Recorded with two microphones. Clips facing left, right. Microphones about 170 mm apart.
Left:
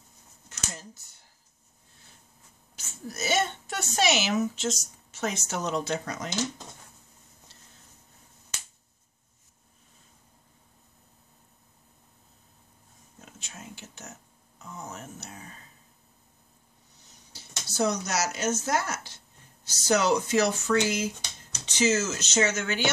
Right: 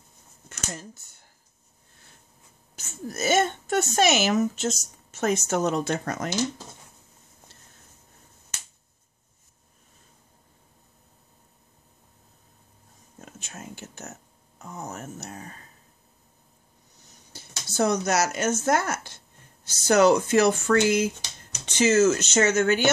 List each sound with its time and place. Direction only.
0.5 s speech: 50° right (ahead or behind)
2.7 s a woman's voice: 50° right (ahead or behind)
13.2 s whispering: 50° right (ahead or behind)
14.6 s a sound: 45° right (ahead or behind)
17.3 s a woman's voice: 50° right (ahead or behind)